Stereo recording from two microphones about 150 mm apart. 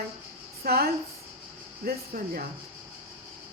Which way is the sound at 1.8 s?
80° right.